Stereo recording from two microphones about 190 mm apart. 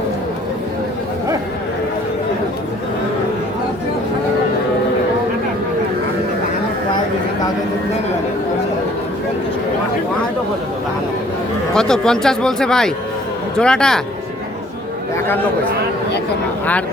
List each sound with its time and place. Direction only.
11.7 s speech: 5° left (ahead or behind)